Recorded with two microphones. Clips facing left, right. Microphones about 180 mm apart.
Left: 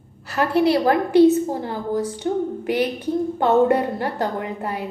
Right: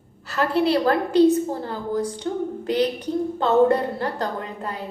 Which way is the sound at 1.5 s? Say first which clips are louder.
Left 2 dB; 15° left (ahead or behind).